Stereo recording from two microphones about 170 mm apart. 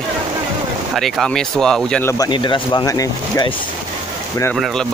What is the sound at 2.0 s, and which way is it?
Speech, 20° left (ahead or behind).